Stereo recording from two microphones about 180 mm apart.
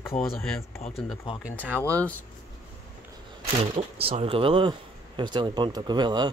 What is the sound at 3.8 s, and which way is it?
Speech, 35° right (ahead or behind).